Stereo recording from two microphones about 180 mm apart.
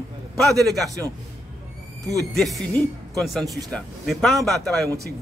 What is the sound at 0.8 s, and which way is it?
Speech, 20° right (ahead or behind).